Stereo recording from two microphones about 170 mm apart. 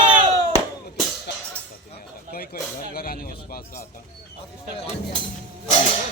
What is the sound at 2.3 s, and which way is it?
Speech, 60° left (ahead or behind).